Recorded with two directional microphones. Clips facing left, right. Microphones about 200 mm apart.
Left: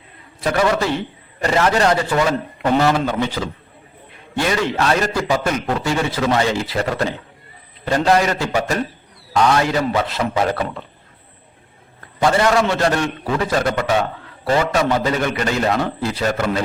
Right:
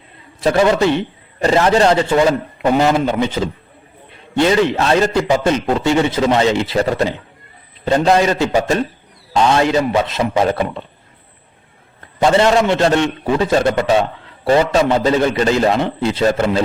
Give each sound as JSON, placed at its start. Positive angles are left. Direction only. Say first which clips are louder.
{"t": 0.4, "sound": "a man's voice", "louder": "right 5 dB", "side_deg": -25}
{"t": 12.2, "sound": "a man's voice", "louder": "right 3 dB", "side_deg": -25}